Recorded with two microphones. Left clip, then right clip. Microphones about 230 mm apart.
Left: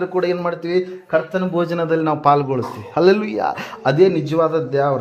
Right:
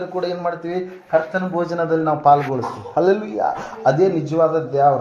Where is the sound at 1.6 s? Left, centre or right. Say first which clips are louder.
Even; left.